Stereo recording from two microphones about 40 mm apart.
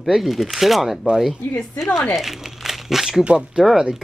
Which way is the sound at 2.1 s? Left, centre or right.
Centre.